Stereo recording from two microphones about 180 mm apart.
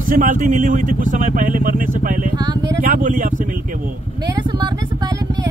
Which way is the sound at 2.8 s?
50° right (ahead or behind).